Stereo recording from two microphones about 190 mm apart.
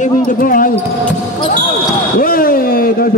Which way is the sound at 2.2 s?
50° left (ahead or behind).